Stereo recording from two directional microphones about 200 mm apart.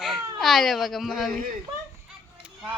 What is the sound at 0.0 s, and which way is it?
Baby cry, centre (ahead or behind).